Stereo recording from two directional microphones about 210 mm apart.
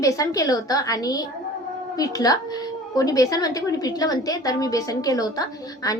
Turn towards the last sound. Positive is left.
turn(degrees=15)  # may be behind; listen again after turning